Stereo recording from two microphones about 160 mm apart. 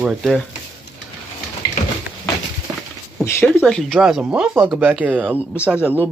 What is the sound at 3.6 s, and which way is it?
Speech, 5° left (ahead or behind).